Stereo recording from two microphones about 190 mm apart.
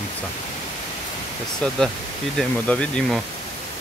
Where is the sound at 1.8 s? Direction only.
5° left (ahead or behind).